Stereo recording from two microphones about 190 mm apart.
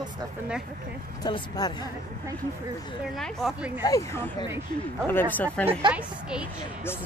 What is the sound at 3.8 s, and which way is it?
Speech, 20° left (ahead or behind).